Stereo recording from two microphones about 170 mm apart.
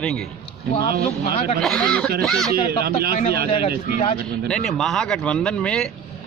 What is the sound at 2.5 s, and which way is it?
Speech, 65° right (ahead or behind).